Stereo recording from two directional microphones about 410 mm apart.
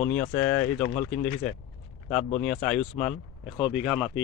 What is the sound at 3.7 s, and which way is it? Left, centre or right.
Speech, centre.